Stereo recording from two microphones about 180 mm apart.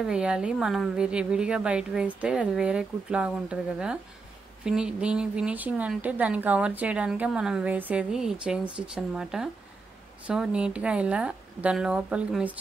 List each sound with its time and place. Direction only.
0.0 s speech: 5° right (ahead or behind)